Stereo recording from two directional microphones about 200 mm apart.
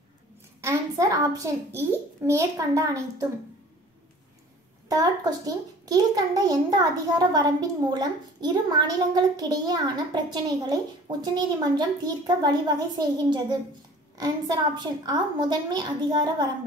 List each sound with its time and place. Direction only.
0.6 s a child's voice: 15° right (ahead or behind)
4.8 s a child's voice: 20° right (ahead or behind)